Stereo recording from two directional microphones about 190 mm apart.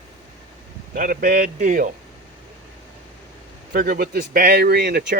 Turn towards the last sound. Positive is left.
turn(degrees=-60)  # may be behind; listen again after turning